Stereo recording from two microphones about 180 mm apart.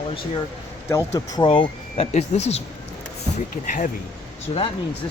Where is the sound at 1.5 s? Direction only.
30° left (ahead or behind); by 3.8 s 45° left (ahead or behind).